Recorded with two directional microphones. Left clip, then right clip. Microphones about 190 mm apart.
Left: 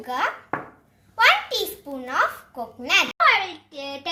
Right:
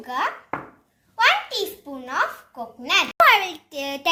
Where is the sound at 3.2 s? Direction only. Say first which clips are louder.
Right 2 dB; 75° right (ahead or behind).